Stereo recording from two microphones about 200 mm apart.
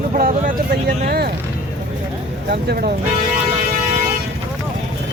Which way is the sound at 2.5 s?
55° right (ahead or behind).